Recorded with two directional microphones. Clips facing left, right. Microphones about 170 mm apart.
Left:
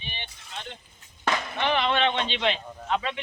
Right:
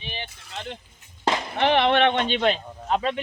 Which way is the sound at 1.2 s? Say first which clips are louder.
Right 3 dB; 30° right (ahead or behind).